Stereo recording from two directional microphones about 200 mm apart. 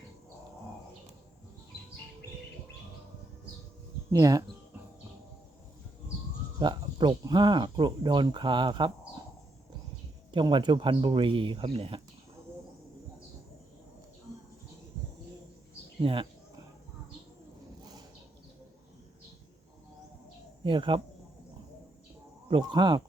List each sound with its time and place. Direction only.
4.1 s speech: 15° right (ahead or behind)
6.6 s speech: 20° right (ahead or behind)
10.3 s speech: 25° right (ahead or behind)
20.7 s speech: 25° right (ahead or behind)
22.4 s speech: 25° right (ahead or behind)